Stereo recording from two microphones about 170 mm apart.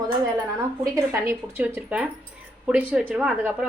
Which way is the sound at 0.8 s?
15° right (ahead or behind).